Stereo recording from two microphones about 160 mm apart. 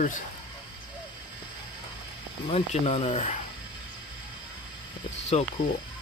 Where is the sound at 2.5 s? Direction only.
40° left (ahead or behind).